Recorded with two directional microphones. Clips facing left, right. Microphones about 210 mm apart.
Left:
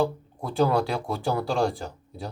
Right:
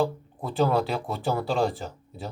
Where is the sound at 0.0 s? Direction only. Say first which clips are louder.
Left 1 dB; centre (ahead or behind).